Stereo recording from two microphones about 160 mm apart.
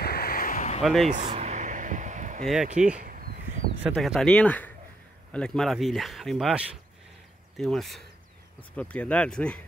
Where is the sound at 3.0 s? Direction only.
60° right (ahead or behind).